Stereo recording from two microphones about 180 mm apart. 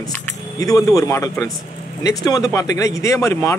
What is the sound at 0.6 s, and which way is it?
Speech, 20° left (ahead or behind).